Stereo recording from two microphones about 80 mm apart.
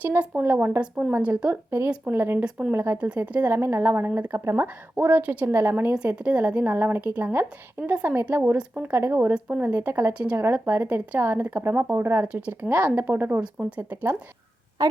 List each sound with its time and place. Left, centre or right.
0.0 s a woman's voice: centre
2.4 s speech: centre
2.7 s a woman's voice: right
3.2 s speech: centre
3.5 s a woman's voice: right
6.1 s a woman's voice: centre
9.3 s a woman's voice: centre
12.3 s a woman's voice: centre
13.4 s speech: centre
13.9 s a woman's voice: right